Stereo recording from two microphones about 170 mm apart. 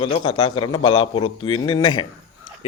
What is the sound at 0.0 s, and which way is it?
A man's voice, 30° left (ahead or behind).